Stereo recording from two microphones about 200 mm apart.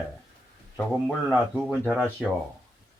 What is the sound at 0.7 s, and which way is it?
Speech, 10° left (ahead or behind).